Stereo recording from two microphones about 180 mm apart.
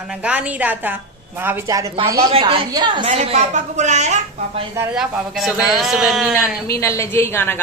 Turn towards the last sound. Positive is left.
turn(degrees=10)  # may be behind; listen again after turning